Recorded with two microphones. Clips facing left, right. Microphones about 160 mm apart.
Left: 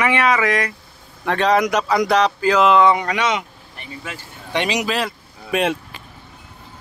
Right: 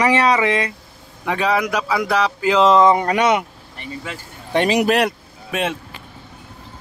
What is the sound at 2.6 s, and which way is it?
Speech, 40° right (ahead or behind).